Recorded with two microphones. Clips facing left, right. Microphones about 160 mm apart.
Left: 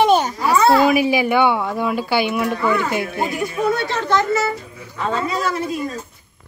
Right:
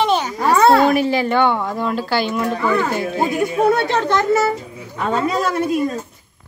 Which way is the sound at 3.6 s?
55° right (ahead or behind).